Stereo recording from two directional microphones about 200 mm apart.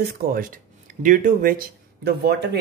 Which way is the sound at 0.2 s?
45° right (ahead or behind).